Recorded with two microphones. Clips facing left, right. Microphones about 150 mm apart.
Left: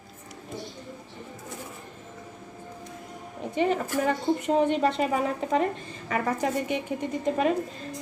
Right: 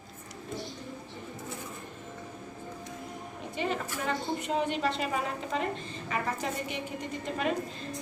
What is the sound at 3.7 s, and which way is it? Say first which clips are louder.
A woman's voice: left 7 dB; 50° left (ahead or behind).